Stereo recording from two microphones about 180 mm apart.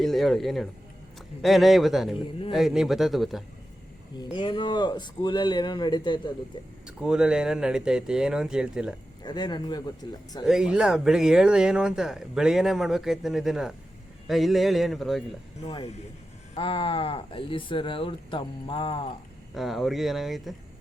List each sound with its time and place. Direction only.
0.0 s speech: centre (ahead or behind)
4.2 s speech: 25° left (ahead or behind)
6.8 s speech: 5° right (ahead or behind)
9.2 s speech: 25° left (ahead or behind)
10.4 s speech: 5° right (ahead or behind)
16.6 s speech: 30° left (ahead or behind)
19.5 s speech: centre (ahead or behind)